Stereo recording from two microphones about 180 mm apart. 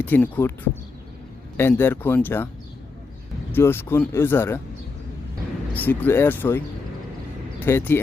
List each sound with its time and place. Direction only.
0.0 s speech: 10° left (ahead or behind)
1.5 s speech: 10° left (ahead or behind)
3.5 s speech: 10° left (ahead or behind)
5.7 s speech: 10° left (ahead or behind)
7.6 s speech: 10° left (ahead or behind)